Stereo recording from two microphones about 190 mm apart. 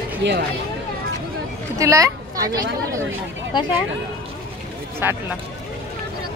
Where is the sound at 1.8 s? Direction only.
15° right (ahead or behind).